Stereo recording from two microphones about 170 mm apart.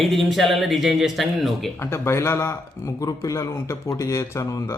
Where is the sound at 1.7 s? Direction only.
15° left (ahead or behind).